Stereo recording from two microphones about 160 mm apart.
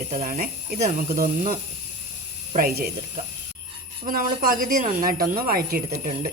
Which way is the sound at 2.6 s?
65° right (ahead or behind).